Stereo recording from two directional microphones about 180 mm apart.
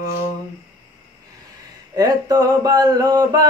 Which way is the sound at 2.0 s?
20° right (ahead or behind).